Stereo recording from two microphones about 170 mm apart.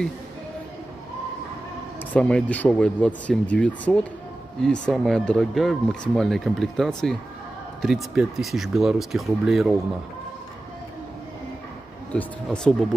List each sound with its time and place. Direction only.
2.1 s speech: 5° left (ahead or behind)
12.1 s speech: 5° left (ahead or behind)